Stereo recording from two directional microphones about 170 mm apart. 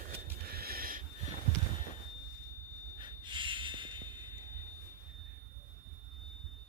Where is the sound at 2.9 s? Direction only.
30° right (ahead or behind).